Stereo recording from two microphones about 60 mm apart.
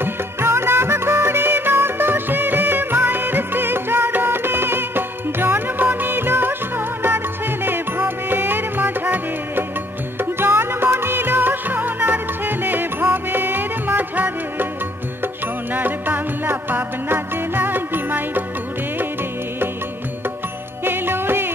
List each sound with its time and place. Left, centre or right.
0.0 s music: right
7.6 s music: right
15.7 s music: right
20.8 s music: right